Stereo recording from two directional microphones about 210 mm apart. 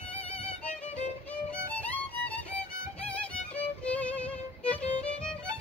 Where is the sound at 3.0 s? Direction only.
5° left (ahead or behind).